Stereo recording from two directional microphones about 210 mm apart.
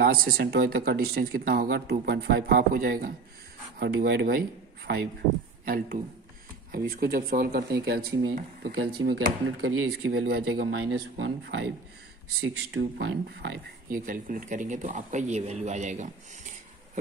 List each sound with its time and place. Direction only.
0.0 s speech: 45° right (ahead or behind)
6.7 s speech: 45° right (ahead or behind)
9.0 s speech: 70° right (ahead or behind)
10.1 s speech: 50° right (ahead or behind)
10.9 s speech: 80° right
11.4 s speech: 55° right (ahead or behind)
12.4 s speech: 75° right (ahead or behind)
12.9 s speech: 55° right (ahead or behind)
13.9 s speech: 40° right (ahead or behind)